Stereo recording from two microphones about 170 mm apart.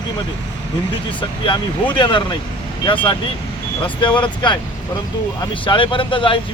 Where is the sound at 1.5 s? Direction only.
30° left (ahead or behind).